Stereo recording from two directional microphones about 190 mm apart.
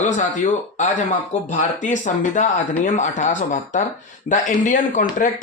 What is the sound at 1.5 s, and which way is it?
Speech, 40° left (ahead or behind).